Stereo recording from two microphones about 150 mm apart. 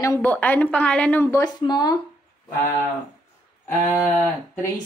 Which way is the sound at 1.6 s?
30° left (ahead or behind).